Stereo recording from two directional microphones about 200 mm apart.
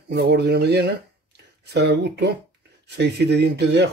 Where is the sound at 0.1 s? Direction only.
55° right (ahead or behind).